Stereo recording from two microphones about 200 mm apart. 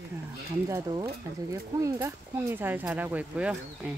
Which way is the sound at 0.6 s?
20° right (ahead or behind).